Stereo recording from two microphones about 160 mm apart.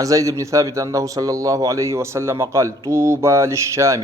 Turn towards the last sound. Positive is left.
turn(degrees=-20)  # may be behind; listen again after turning